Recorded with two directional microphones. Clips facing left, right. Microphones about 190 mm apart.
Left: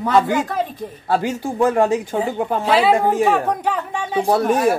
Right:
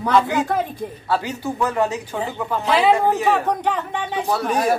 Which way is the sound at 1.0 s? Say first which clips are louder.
Left 4 dB; 50° left (ahead or behind).